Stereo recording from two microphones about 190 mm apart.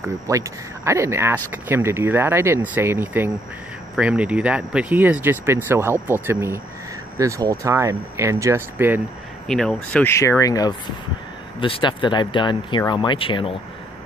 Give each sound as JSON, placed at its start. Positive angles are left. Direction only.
{"t": 0.0, "sound": "speech", "side_deg": -15}
{"t": 9.5, "sound": "speech", "side_deg": 5}